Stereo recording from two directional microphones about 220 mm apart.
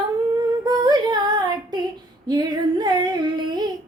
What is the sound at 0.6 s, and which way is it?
Female singing, 20° right (ahead or behind).